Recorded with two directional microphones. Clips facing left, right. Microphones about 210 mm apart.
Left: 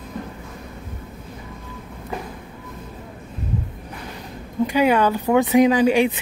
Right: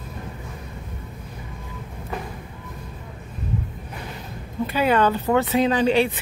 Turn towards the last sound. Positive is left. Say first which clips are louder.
# left 3 dB
turn(degrees=10)  # may be behind; listen again after turning